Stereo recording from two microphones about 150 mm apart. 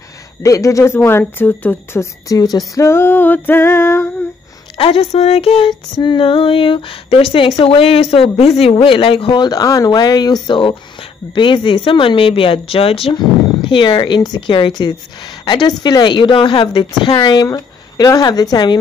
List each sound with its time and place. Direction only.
0.4 s speech: 20° left (ahead or behind)
4.7 s female singing: 40° left (ahead or behind)
17.0 s speech: 30° left (ahead or behind)